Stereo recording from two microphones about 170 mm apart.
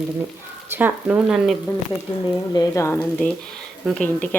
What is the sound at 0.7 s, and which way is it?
Speech, 10° right (ahead or behind).